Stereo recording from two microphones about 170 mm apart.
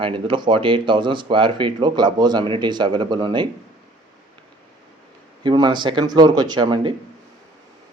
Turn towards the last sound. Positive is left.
turn(degrees=-25)  # may be behind; listen again after turning